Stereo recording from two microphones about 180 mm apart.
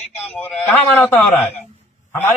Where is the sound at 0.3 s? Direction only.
10° left (ahead or behind).